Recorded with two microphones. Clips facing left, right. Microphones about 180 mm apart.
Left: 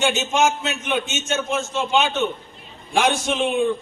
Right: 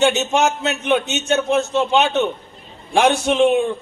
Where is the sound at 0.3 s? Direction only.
65° right (ahead or behind).